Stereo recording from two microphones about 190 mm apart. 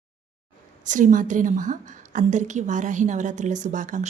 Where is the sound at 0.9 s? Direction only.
45° right (ahead or behind).